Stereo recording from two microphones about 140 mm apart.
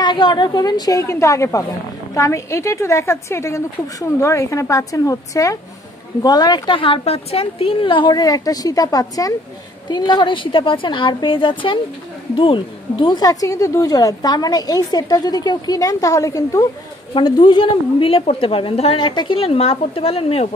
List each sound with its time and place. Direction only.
0.0 s a woman's voice: 30° left (ahead or behind)
17.1 s a woman's voice: 35° left (ahead or behind)